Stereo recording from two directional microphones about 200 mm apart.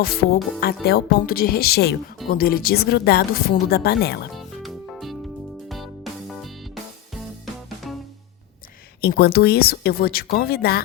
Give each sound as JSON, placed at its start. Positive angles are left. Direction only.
{"t": 0.0, "sound": "speech", "side_deg": 50}
{"t": 4.4, "sound": "music", "side_deg": 0}
{"t": 7.9, "sound": "music", "side_deg": 0}
{"t": 9.0, "sound": "speech", "side_deg": 50}